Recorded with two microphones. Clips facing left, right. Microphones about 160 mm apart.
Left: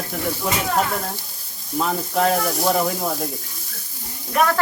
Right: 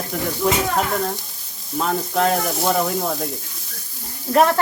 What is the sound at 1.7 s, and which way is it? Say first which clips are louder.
Speech: right 1 dB; centre (ahead or behind).